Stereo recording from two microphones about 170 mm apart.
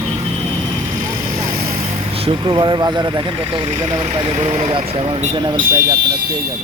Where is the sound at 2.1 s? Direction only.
35° right (ahead or behind).